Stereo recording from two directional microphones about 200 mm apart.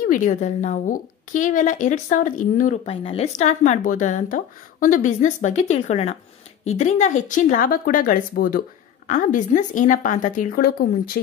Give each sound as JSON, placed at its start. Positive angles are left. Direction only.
{"t": 0.0, "sound": "a woman's voice", "side_deg": 40}